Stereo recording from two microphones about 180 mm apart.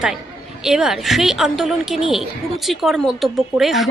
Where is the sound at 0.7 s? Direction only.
5° right (ahead or behind).